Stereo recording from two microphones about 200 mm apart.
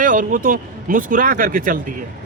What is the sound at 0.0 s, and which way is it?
Speech, 40° right (ahead or behind).